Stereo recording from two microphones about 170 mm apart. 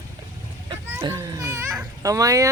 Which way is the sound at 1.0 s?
20° right (ahead or behind).